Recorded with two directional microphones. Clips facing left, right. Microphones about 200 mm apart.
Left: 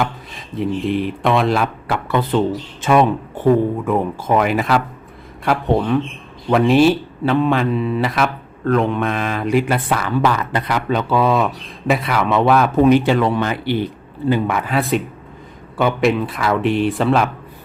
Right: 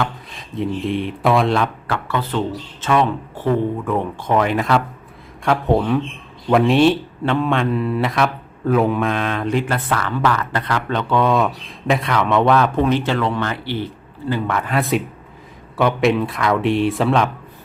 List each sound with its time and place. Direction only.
0.3 s speech: centre (ahead or behind)